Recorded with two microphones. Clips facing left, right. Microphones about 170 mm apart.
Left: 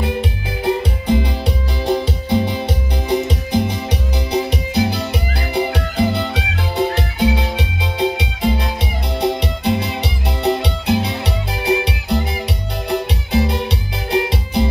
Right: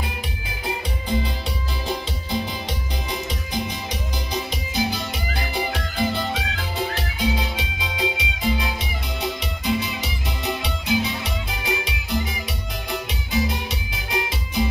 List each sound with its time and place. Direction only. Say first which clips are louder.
0.7 s music: left 9 dB; 65° left (ahead or behind)